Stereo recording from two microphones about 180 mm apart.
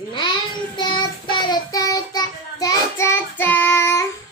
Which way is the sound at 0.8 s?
25° left (ahead or behind).